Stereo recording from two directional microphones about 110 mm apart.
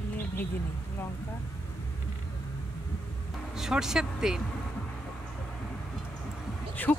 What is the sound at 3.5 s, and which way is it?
Speech, 5° right (ahead or behind).